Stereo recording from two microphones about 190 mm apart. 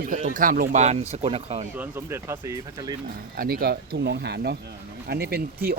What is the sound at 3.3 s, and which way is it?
Speech, 50° right (ahead or behind).